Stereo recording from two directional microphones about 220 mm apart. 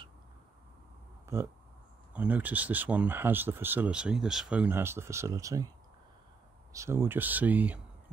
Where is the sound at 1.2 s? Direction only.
10° right (ahead or behind).